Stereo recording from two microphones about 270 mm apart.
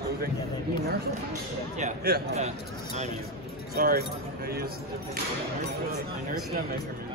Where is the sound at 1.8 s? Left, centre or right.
Right.